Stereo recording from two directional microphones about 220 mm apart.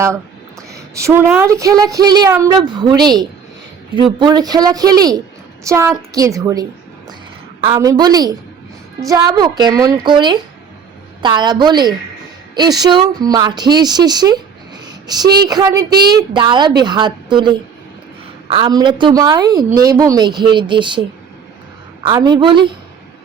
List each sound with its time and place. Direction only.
0.7 s a sound: 15° right (ahead or behind)
1.3 s a woman's voice: 10° right (ahead or behind)
22.0 s a woman's voice: 20° right (ahead or behind)